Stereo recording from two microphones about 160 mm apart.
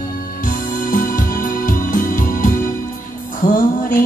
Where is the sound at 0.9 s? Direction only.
60° left (ahead or behind).